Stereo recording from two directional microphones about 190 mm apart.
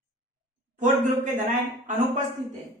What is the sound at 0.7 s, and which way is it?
A man's voice, 40° right (ahead or behind).